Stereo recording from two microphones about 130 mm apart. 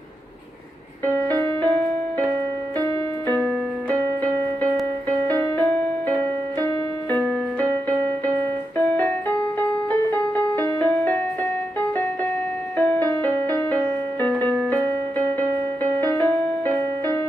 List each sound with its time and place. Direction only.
1.0 s music: 15° left (ahead or behind)
2.8 s keyboard: 15° left (ahead or behind)
5.3 s music: 10° left (ahead or behind)
9.6 s music: 15° left (ahead or behind)
12.7 s music: 10° left (ahead or behind)